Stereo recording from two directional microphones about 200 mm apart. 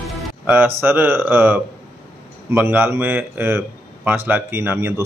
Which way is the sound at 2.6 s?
10° right (ahead or behind).